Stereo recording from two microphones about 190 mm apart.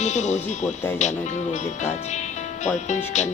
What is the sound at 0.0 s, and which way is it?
Speech, 40° left (ahead or behind).